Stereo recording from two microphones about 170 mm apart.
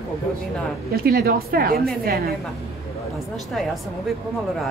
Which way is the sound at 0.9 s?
65° right (ahead or behind).